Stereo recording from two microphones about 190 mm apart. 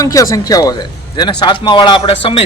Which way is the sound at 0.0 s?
15° left (ahead or behind).